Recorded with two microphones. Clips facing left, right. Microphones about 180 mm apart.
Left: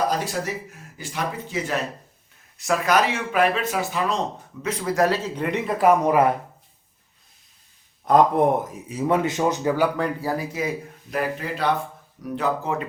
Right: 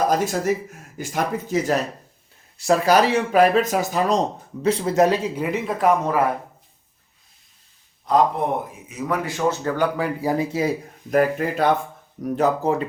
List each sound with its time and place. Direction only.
0.1 s speech: 45° right (ahead or behind)
2.6 s speech: 30° right (ahead or behind)
4.6 s a man's voice: 30° right (ahead or behind); by 6.0 s 5° left (ahead or behind)
6.0 s speech: 15° left (ahead or behind)
8.1 s speech: 50° left (ahead or behind)
8.9 s speech: 30° left (ahead or behind); by 9.9 s 10° left (ahead or behind)
10.2 s speech: 20° right (ahead or behind)
11.1 s speech: 45° right (ahead or behind)